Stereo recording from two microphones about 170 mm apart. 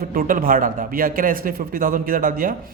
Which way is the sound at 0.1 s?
55° right (ahead or behind).